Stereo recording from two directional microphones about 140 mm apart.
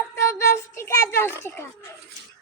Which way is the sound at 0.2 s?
20° left (ahead or behind).